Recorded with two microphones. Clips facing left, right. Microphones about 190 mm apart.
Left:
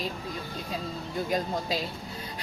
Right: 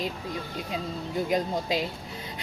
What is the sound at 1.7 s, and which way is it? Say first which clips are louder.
Speech: right 4 dB; 20° right (ahead or behind).